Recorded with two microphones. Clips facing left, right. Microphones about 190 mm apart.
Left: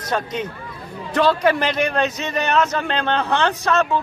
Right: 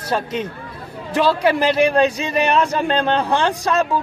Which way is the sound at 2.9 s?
35° right (ahead or behind).